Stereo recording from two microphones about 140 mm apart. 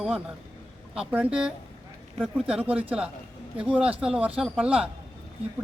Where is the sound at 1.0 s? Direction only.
10° right (ahead or behind).